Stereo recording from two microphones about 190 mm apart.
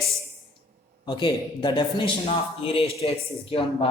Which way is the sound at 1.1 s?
25° left (ahead or behind).